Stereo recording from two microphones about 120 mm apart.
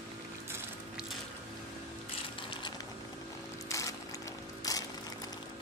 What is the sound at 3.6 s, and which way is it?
Music, 25° left (ahead or behind).